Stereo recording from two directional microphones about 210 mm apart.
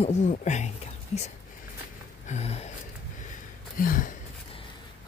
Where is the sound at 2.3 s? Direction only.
30° left (ahead or behind).